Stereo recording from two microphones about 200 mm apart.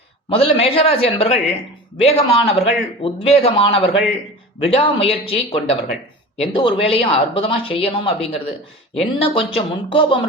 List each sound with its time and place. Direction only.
0.3 s speech: 30° left (ahead or behind)